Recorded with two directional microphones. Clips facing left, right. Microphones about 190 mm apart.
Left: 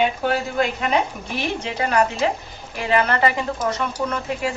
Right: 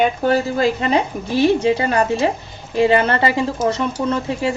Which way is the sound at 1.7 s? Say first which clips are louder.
Right 3 dB; 30° right (ahead or behind).